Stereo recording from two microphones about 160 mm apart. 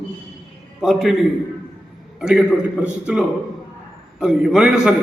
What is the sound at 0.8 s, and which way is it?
Speech, centre (ahead or behind).